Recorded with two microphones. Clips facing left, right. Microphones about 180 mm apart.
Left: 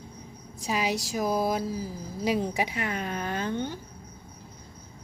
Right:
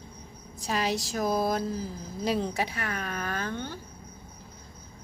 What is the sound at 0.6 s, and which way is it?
Speech, 10° left (ahead or behind).